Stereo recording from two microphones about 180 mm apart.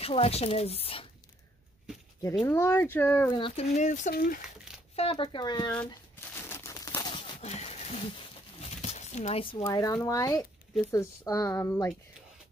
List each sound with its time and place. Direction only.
0.0 s a woman's voice: 35° left (ahead or behind)
2.4 s speech: 15° left (ahead or behind)
3.3 s a woman's voice: 30° left (ahead or behind); by 4.4 s 50° left (ahead or behind)
4.9 s speech: 30° left (ahead or behind)
6.3 s a sound: 15° left (ahead or behind); by 9.6 s 30° left (ahead or behind)
9.6 s speech: 20° left (ahead or behind)